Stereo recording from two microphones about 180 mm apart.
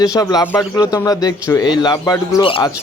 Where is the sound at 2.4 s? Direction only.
30° left (ahead or behind).